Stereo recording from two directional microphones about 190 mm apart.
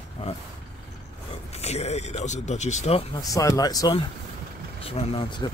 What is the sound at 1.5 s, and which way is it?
Speech, 35° left (ahead or behind).